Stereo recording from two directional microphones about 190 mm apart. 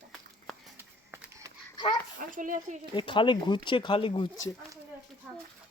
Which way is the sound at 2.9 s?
25° left (ahead or behind).